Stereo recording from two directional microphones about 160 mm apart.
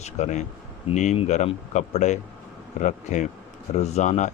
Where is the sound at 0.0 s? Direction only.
45° left (ahead or behind).